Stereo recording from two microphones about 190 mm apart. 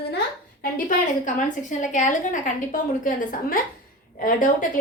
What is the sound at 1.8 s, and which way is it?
Speech, 40° left (ahead or behind).